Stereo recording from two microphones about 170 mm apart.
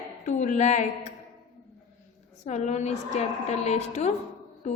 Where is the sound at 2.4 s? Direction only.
45° left (ahead or behind).